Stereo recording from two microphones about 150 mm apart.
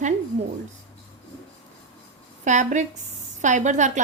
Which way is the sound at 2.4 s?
55° right (ahead or behind).